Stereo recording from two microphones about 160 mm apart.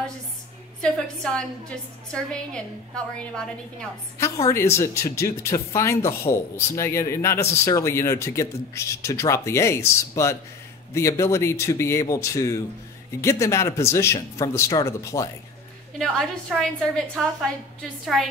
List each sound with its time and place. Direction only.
0.7 s a woman's voice: 5° left (ahead or behind)
4.2 s speech: 20° left (ahead or behind)
16.0 s a woman's voice: centre (ahead or behind)